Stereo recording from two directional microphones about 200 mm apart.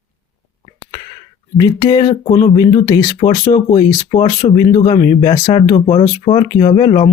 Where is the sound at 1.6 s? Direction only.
20° left (ahead or behind).